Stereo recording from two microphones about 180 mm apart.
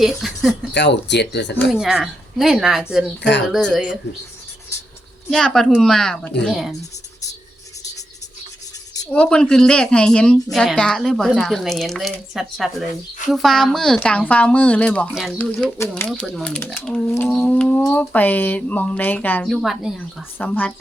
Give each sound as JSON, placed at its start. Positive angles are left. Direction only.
{"t": 0.0, "sound": "speech", "side_deg": 0}
{"t": 0.7, "sound": "speech", "side_deg": 75}
{"t": 1.7, "sound": "a woman's voice", "side_deg": -5}
{"t": 5.3, "sound": "a woman's voice", "side_deg": 0}
{"t": 9.1, "sound": "a woman's voice", "side_deg": 5}
{"t": 19.5, "sound": "a woman's voice", "side_deg": 0}